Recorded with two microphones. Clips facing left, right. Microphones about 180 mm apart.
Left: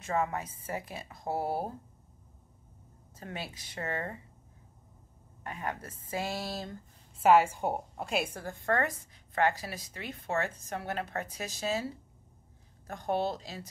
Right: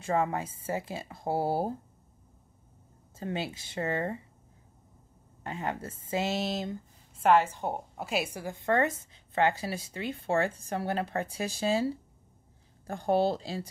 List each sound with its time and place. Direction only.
0.0 s a woman's voice: 30° right (ahead or behind)
3.2 s a woman's voice: 25° right (ahead or behind)
5.4 s a woman's voice: 25° right (ahead or behind)
7.2 s a woman's voice: 10° left (ahead or behind)
8.0 s a woman's voice: 5° right (ahead or behind); by 13.7 s 30° right (ahead or behind)